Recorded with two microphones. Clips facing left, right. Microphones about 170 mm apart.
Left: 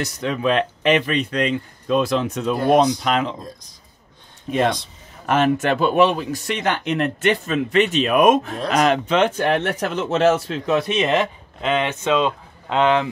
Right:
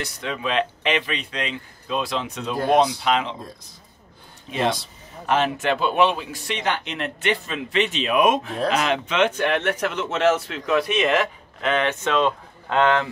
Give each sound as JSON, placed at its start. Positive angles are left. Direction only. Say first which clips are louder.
{"t": 0.0, "sound": "a man's voice", "louder": "left 6 dB", "side_deg": 45}
{"t": 4.5, "sound": "a man's voice", "louder": "left 4 dB", "side_deg": 55}